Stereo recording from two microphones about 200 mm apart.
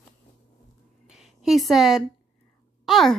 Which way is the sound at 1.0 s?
Centre (ahead or behind).